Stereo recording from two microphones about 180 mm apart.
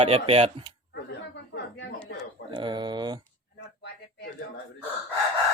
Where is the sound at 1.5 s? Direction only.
70° left (ahead or behind).